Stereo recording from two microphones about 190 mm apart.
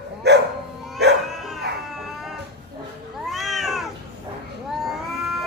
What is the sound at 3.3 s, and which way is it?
Cat, centre (ahead or behind).